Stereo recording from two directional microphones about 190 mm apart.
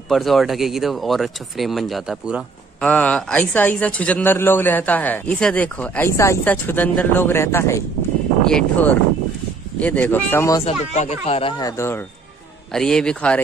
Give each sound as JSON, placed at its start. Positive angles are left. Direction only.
{"t": 0.1, "sound": "speech", "side_deg": 0}
{"t": 2.8, "sound": "speech", "side_deg": 5}
{"t": 10.6, "sound": "speech", "side_deg": 35}
{"t": 12.7, "sound": "speech", "side_deg": 5}